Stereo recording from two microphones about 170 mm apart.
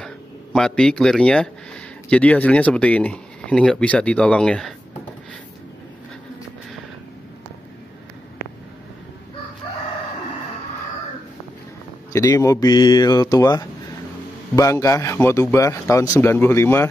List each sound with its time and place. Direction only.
0.0 s speech: 5° left (ahead or behind)
12.1 s a man's voice: 20° left (ahead or behind)